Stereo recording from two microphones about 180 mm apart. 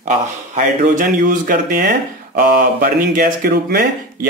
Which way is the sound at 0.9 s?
50° right (ahead or behind).